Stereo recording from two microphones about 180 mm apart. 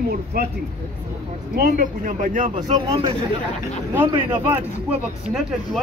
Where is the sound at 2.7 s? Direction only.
25° right (ahead or behind).